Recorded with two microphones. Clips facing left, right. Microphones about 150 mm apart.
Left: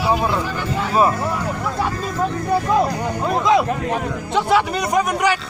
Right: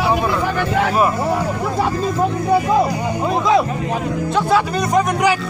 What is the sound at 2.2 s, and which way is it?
Speech, 5° right (ahead or behind).